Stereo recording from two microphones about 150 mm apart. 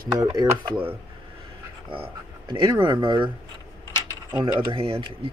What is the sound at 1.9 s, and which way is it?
Speech, 35° right (ahead or behind).